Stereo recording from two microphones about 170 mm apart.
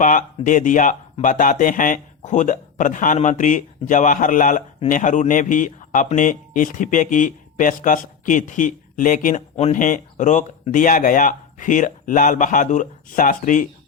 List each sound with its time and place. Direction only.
0.0 s speech: 50° left (ahead or behind)